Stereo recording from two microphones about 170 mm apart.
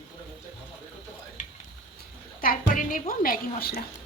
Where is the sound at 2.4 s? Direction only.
55° left (ahead or behind).